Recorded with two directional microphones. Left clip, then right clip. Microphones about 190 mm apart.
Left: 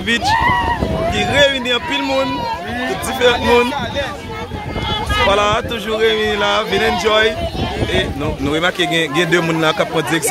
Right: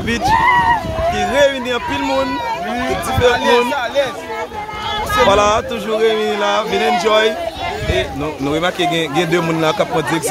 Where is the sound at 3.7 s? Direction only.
55° right (ahead or behind).